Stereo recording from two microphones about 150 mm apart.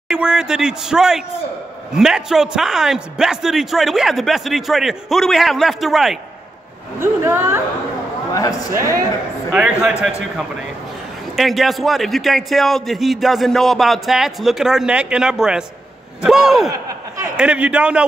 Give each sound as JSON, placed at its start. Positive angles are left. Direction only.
{"t": 0.1, "sound": "a man's voice", "side_deg": -5}
{"t": 7.0, "sound": "speech", "side_deg": -15}
{"t": 9.5, "sound": "a man's voice", "side_deg": -5}